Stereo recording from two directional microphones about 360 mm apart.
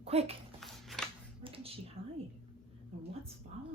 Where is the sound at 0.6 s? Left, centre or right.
Centre.